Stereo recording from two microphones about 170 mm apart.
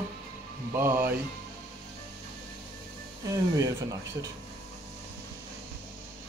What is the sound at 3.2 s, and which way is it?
A man's voice, 20° right (ahead or behind).